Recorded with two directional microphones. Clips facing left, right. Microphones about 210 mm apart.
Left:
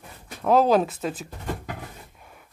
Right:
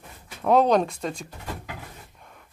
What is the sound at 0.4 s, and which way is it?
Speech, centre (ahead or behind).